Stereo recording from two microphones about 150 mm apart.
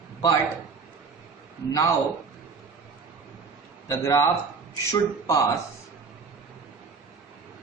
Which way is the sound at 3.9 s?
20° left (ahead or behind).